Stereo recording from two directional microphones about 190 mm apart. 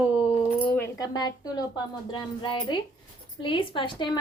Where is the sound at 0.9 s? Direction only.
20° left (ahead or behind).